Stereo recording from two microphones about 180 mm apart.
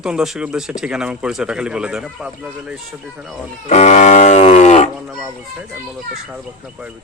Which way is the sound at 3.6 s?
40° left (ahead or behind).